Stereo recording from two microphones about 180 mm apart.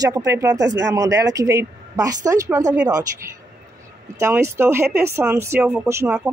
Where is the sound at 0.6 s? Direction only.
75° right (ahead or behind).